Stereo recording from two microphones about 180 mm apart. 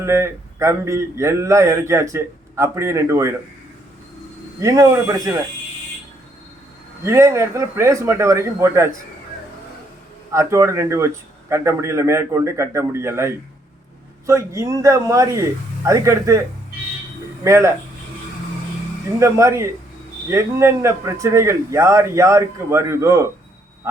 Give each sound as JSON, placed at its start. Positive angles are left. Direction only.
{"t": 0.0, "sound": "a man's voice", "side_deg": -15}
{"t": 4.6, "sound": "speech", "side_deg": -20}
{"t": 7.0, "sound": "a man's voice", "side_deg": -15}
{"t": 10.3, "sound": "a man's voice", "side_deg": -15}
{"t": 17.4, "sound": "speech", "side_deg": -15}
{"t": 19.2, "sound": "a man's voice", "side_deg": -15}